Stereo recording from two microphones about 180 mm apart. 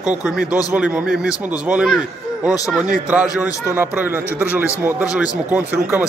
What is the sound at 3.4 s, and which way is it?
Speech, 15° left (ahead or behind).